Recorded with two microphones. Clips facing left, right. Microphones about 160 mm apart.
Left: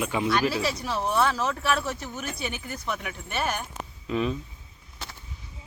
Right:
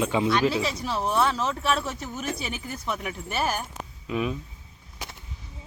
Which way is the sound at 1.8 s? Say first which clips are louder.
Right 1 dB; centre (ahead or behind).